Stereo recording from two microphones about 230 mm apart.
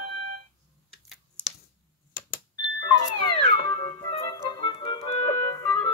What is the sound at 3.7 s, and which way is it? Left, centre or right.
Music, left.